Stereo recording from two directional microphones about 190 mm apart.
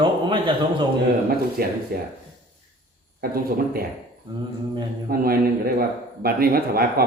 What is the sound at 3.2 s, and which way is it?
Speech, 50° right (ahead or behind).